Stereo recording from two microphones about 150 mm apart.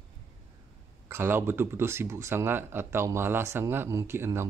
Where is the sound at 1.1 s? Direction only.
15° right (ahead or behind).